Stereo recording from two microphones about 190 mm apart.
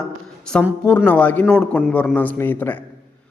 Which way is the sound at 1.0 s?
10° left (ahead or behind).